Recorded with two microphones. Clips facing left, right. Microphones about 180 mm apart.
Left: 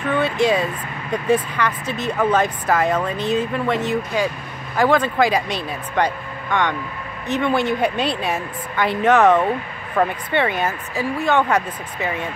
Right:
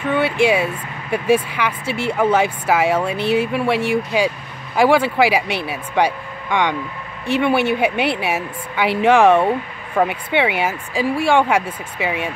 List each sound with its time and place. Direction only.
0.0 s speech: 10° right (ahead or behind)